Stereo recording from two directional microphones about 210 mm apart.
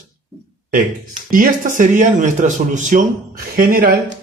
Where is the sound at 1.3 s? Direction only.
40° right (ahead or behind).